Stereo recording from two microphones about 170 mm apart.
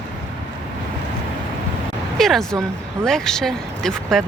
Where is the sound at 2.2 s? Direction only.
Centre (ahead or behind).